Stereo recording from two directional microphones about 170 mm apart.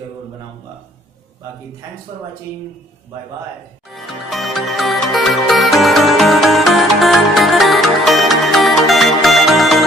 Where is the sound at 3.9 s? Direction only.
Centre (ahead or behind).